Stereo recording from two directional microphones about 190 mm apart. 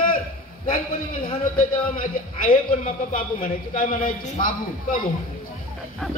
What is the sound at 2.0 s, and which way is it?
A man's voice, 45° left (ahead or behind).